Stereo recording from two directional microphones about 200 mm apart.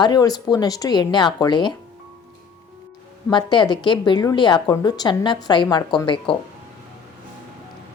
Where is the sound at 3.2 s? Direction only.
20° left (ahead or behind).